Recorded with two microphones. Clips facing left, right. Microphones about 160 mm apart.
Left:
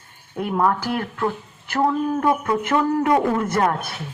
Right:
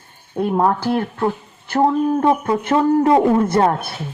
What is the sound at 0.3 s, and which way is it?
A woman's voice, 30° right (ahead or behind).